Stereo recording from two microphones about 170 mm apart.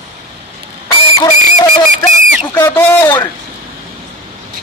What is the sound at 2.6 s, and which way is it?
Speech, 10° left (ahead or behind).